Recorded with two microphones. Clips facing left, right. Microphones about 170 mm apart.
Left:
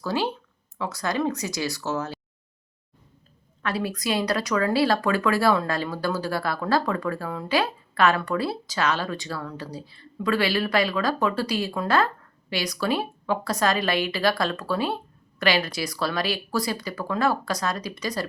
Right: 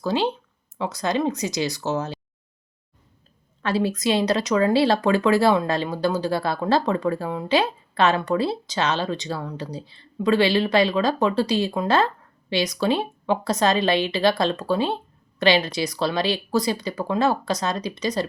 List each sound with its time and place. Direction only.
0.0 s speech: 20° right (ahead or behind)
3.6 s speech: 25° right (ahead or behind)